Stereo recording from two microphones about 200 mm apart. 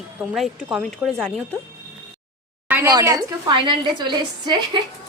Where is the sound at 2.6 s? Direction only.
10° right (ahead or behind).